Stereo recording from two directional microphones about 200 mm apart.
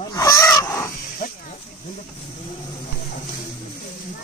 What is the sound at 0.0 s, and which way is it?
Fowl, 15° left (ahead or behind).